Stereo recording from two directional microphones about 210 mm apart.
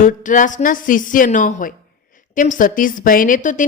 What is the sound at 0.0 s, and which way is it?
A woman's voice, 40° left (ahead or behind).